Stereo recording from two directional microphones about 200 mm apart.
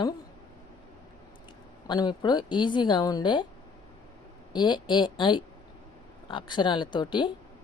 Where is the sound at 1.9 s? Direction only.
20° left (ahead or behind).